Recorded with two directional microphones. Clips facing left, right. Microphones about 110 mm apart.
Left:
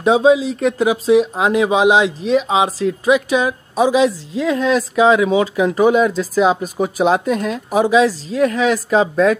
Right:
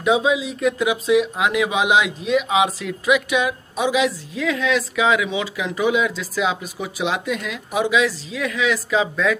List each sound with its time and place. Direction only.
0.0 s speech: 35° left (ahead or behind)